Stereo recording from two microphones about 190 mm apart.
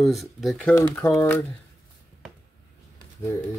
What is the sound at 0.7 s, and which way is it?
Speech, 10° left (ahead or behind).